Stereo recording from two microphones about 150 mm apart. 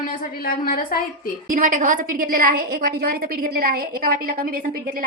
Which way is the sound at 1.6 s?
60° right (ahead or behind).